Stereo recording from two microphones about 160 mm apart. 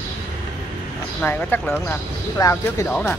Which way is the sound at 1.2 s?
10° left (ahead or behind).